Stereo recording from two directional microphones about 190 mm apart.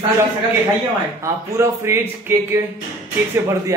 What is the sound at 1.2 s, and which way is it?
Speech, 15° right (ahead or behind).